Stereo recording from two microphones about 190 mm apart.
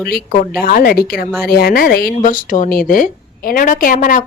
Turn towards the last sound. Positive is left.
turn(degrees=45)  # may be behind; listen again after turning